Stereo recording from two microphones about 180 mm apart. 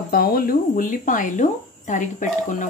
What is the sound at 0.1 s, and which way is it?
A woman's voice, 55° left (ahead or behind).